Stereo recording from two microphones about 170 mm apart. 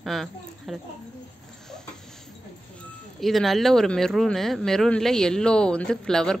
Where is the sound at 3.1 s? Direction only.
Centre (ahead or behind).